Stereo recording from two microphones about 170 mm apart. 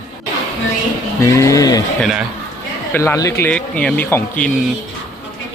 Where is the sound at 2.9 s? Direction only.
15° left (ahead or behind).